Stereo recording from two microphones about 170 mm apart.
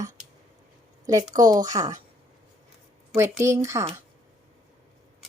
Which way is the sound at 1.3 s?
20° right (ahead or behind).